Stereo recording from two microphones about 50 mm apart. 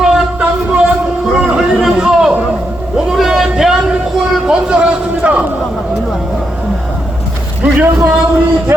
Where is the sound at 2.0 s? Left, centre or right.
Centre.